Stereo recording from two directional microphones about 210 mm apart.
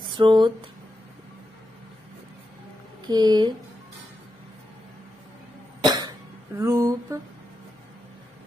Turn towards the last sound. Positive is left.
turn(degrees=-15)  # may be behind; listen again after turning